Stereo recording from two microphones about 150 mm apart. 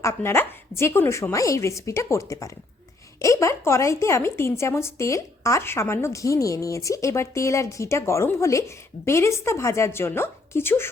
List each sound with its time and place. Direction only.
0.0 s a woman's voice: 15° left (ahead or behind)